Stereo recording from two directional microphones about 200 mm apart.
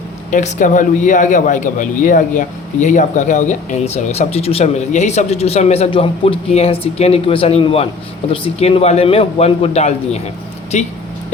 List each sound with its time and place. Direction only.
0.3 s speech: 40° left (ahead or behind)